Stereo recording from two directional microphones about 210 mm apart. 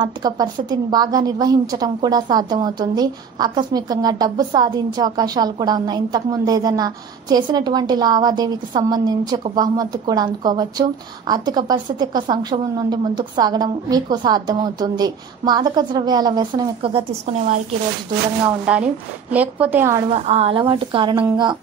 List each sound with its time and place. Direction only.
0.0 s a woman's voice: 20° right (ahead or behind)
18.7 s a woman's voice: 5° right (ahead or behind)
20.1 s a woman's voice: 30° right (ahead or behind)